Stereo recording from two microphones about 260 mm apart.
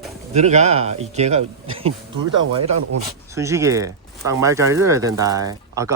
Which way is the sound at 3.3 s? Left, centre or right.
Centre.